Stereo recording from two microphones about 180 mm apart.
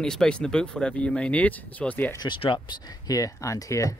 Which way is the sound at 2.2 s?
25° left (ahead or behind).